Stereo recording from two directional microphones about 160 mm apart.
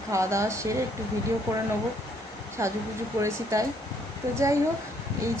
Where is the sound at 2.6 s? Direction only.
15° right (ahead or behind).